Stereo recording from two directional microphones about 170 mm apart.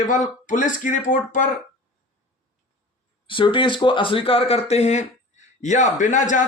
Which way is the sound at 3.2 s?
30° left (ahead or behind).